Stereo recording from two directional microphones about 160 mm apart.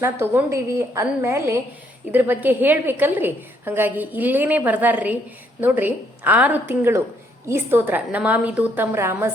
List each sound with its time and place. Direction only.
0.0 s a woman's voice: 15° right (ahead or behind)